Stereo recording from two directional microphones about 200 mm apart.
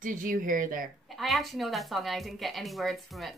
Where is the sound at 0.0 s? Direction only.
40° right (ahead or behind).